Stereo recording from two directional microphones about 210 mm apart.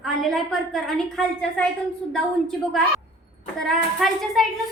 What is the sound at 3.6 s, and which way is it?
Speech, centre (ahead or behind).